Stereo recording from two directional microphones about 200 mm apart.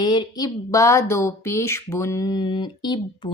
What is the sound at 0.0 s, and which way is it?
Speech, 20° left (ahead or behind).